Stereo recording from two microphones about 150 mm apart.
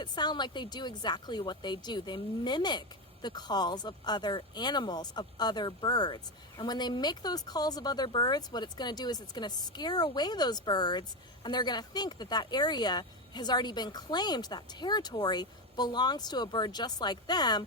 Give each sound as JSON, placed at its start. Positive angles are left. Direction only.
{"t": 0.0, "sound": "a woman's voice", "side_deg": 30}